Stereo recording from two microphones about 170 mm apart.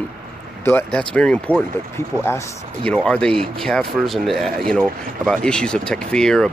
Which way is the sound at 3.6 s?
5° left (ahead or behind).